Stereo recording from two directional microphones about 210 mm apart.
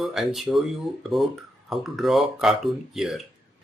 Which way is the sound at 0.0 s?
Centre (ahead or behind).